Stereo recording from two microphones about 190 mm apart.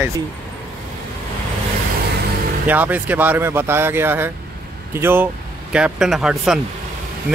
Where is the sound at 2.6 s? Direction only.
10° right (ahead or behind).